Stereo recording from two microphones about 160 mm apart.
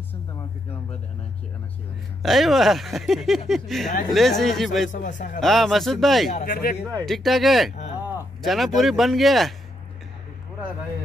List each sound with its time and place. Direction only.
2.2 s speech: centre (ahead or behind)
4.9 s a man's voice: 55° left (ahead or behind)
5.4 s speech: centre (ahead or behind)
6.3 s speech: 60° left (ahead or behind)
7.1 s speech: centre (ahead or behind)